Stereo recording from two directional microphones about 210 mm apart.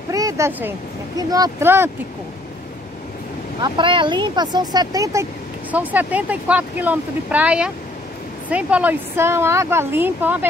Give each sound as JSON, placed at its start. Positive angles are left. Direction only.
{"t": 0.1, "sound": "speech", "side_deg": -15}
{"t": 3.6, "sound": "speech", "side_deg": -25}